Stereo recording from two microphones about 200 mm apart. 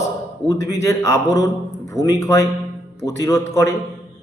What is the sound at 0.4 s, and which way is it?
A man's voice, 15° left (ahead or behind).